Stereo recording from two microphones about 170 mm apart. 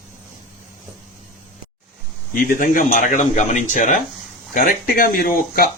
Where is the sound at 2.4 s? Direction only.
55° left (ahead or behind).